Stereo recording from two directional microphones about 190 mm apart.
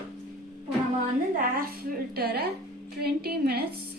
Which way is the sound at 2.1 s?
55° right (ahead or behind).